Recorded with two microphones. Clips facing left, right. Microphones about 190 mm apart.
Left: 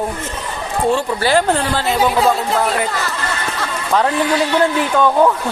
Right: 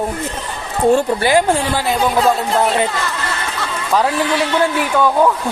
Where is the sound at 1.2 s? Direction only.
15° right (ahead or behind).